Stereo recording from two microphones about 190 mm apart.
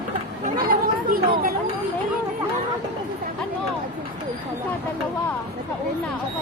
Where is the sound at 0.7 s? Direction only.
50° right (ahead or behind).